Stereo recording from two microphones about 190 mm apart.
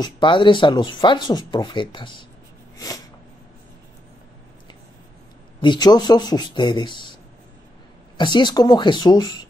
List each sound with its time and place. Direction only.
0.0 s speech: 25° left (ahead or behind)
5.6 s speech: 25° left (ahead or behind)
8.2 s speech: 25° left (ahead or behind)